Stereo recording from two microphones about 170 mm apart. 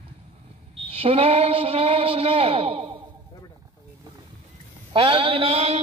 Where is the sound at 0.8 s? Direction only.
35° right (ahead or behind).